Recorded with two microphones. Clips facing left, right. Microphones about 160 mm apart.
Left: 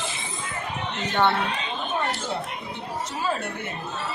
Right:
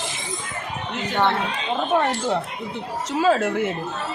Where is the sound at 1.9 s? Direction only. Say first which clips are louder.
Right 8 dB; 75° right (ahead or behind).